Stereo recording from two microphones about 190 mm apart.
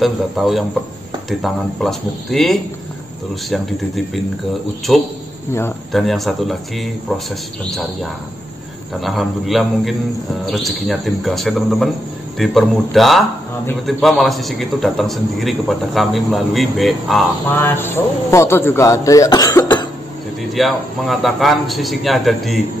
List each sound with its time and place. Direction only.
0.0 s a man's voice: centre (ahead or behind)
5.5 s a man's voice: 15° left (ahead or behind)
5.9 s a man's voice: centre (ahead or behind)
17.6 s a man's voice: 10° left (ahead or behind)
20.5 s a man's voice: centre (ahead or behind)